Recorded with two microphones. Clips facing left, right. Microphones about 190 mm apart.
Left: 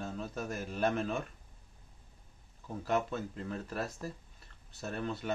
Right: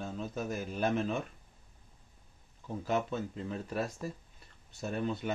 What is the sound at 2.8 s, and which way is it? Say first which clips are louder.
Speech: even; centre (ahead or behind).